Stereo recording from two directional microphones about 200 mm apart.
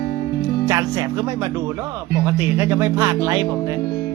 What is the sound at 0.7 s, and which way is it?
Speech, 15° right (ahead or behind).